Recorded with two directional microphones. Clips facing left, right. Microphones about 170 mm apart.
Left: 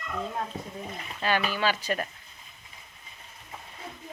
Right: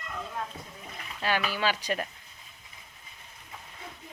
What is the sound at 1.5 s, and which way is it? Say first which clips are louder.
Speech: left 1 dB; 15° right (ahead or behind).